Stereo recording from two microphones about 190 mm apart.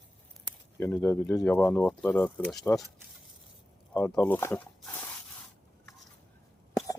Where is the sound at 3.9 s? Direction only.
10° left (ahead or behind).